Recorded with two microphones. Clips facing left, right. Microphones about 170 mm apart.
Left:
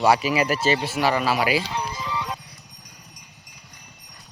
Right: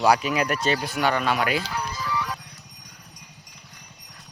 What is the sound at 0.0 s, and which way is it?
Speech, 5° left (ahead or behind).